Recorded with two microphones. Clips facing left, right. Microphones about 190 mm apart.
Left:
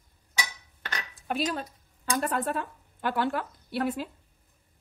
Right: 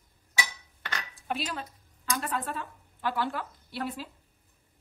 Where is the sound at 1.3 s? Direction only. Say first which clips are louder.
Left 4 dB; 45° left (ahead or behind).